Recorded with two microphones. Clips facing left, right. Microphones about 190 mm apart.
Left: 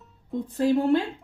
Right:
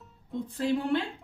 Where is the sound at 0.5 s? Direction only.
45° left (ahead or behind).